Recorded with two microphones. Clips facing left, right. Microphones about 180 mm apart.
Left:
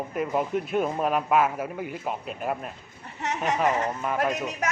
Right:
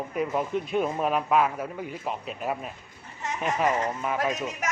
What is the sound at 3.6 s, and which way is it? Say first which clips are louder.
Speech: right 2 dB; centre (ahead or behind).